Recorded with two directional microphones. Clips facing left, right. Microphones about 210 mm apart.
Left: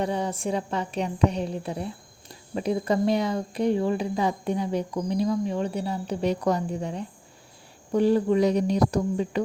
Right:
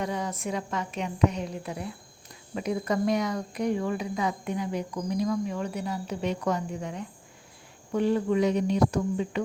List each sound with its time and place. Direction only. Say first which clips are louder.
0.0 s speech: left 4 dB; 30° left (ahead or behind)